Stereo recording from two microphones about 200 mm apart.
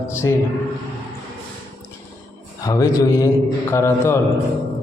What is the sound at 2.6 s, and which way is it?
A man's voice, 15° left (ahead or behind).